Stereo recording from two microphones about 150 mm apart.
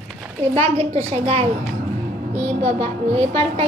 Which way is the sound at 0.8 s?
40° right (ahead or behind).